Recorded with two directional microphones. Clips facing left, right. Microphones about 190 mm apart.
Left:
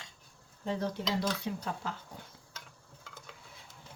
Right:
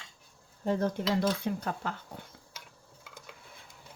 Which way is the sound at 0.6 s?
50° right (ahead or behind).